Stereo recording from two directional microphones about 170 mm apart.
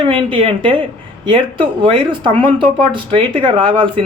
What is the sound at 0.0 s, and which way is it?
Speech, 30° right (ahead or behind).